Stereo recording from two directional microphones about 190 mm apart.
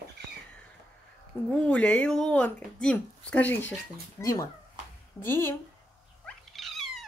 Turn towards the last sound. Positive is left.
turn(degrees=0)  # may be behind; listen again after turning